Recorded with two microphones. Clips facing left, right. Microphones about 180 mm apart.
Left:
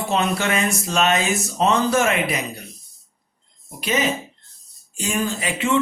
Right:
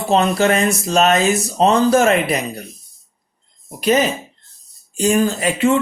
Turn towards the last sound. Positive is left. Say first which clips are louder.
# right 6 dB
turn(degrees=-40)  # may be behind; listen again after turning